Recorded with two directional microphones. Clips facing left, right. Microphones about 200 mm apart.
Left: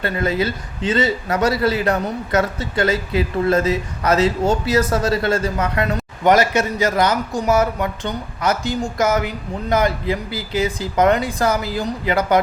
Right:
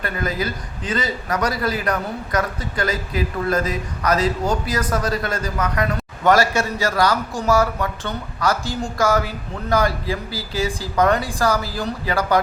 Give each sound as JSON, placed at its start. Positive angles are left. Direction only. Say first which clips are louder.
{"t": 0.0, "sound": "a man's voice", "louder": "left 4 dB", "side_deg": 25}